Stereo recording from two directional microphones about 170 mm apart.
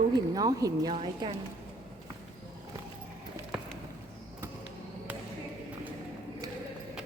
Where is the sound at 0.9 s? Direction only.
35° right (ahead or behind).